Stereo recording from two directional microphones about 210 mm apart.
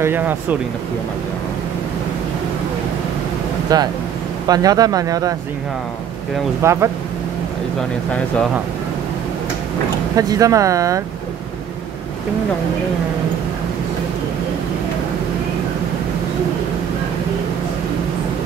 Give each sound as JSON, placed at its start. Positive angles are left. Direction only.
{"t": 0.0, "sound": "speech", "side_deg": -10}
{"t": 3.7, "sound": "speech", "side_deg": -20}
{"t": 6.6, "sound": "speech", "side_deg": -15}
{"t": 10.1, "sound": "speech", "side_deg": -15}